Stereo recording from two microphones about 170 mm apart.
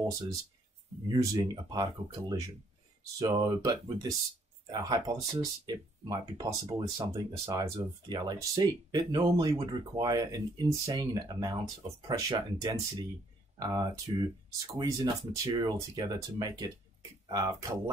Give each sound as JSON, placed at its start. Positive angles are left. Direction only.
{"t": 1.1, "sound": "speech", "side_deg": -25}